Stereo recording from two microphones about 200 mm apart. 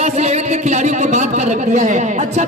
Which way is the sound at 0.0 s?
35° right (ahead or behind).